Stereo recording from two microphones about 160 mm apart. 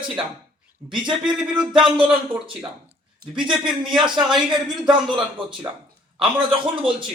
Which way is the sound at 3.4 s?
30° right (ahead or behind).